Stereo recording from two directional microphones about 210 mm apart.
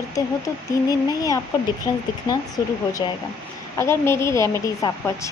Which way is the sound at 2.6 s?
15° left (ahead or behind).